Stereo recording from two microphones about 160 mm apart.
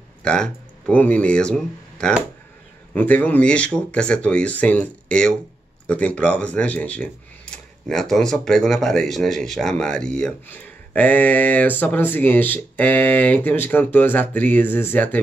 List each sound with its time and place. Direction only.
0.2 s speech: 5° left (ahead or behind)